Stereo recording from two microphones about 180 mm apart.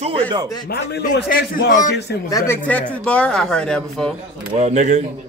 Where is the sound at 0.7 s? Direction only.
70° left (ahead or behind).